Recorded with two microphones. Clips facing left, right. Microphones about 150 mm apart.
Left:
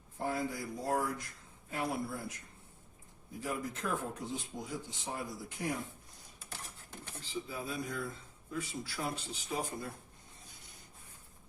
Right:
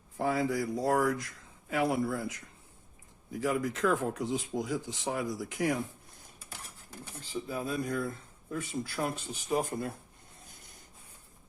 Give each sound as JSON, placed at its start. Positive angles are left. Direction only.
{"t": 0.2, "sound": "speech", "side_deg": -90}
{"t": 7.4, "sound": "speech", "side_deg": -50}